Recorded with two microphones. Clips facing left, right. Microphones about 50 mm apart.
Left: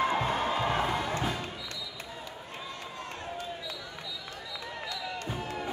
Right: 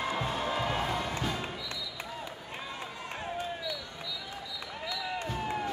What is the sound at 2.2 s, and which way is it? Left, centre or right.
Run, centre.